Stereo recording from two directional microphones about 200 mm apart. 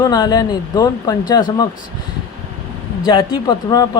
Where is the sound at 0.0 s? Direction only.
20° left (ahead or behind).